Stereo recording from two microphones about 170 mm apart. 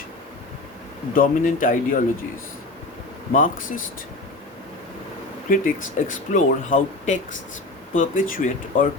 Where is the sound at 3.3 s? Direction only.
50° left (ahead or behind).